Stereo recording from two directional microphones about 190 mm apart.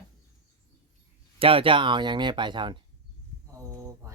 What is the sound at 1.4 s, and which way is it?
Speech, 30° right (ahead or behind).